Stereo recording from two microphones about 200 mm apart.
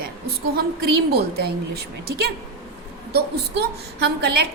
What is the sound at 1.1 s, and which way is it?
A woman's voice, 50° right (ahead or behind).